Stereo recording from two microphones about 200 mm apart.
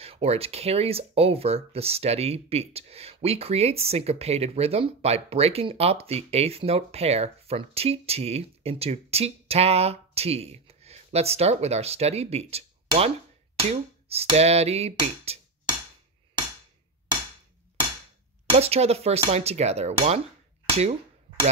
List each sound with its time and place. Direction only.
0.0 s speech: 30° right (ahead or behind)
13.6 s a sound: 30° right (ahead or behind)
18.6 s speech: 30° right (ahead or behind)